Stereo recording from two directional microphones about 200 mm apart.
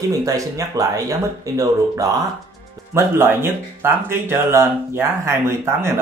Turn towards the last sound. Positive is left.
turn(degrees=-15)  # may be behind; listen again after turning